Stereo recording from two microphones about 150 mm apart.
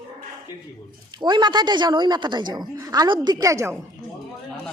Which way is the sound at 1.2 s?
30° right (ahead or behind).